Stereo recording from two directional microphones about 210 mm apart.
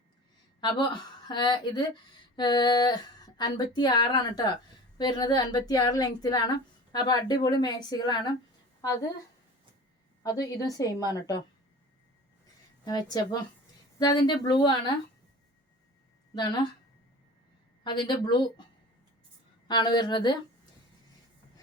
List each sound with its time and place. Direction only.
0.6 s a woman's voice: 20° left (ahead or behind)
10.2 s a woman's voice: 15° left (ahead or behind)
12.8 s a woman's voice: 20° left (ahead or behind)
16.3 s speech: 20° left (ahead or behind)
17.8 s a woman's voice: 20° left (ahead or behind)
19.6 s a woman's voice: 20° left (ahead or behind)